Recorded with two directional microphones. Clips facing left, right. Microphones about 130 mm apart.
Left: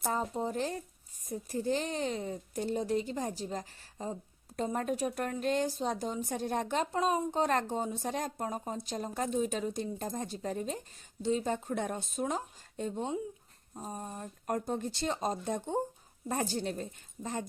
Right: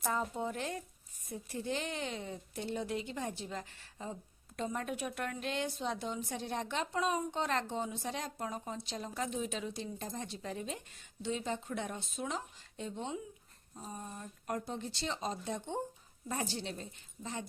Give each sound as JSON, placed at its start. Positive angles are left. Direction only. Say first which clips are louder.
{"t": 0.0, "sound": "a woman's voice", "louder": "left 3 dB", "side_deg": 30}